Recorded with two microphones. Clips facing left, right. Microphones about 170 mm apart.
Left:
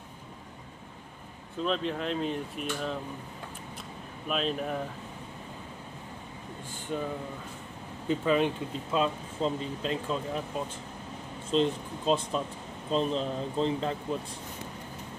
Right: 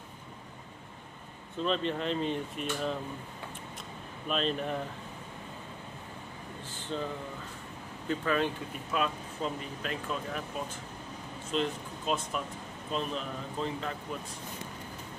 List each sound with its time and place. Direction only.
1.6 s speech: centre (ahead or behind)
4.3 s speech: 5° left (ahead or behind)
6.9 s speech: 10° left (ahead or behind)
8.1 s speech: 20° left (ahead or behind)
11.5 s speech: 30° left (ahead or behind)